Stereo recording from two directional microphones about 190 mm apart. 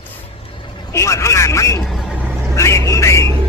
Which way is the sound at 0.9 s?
15° left (ahead or behind).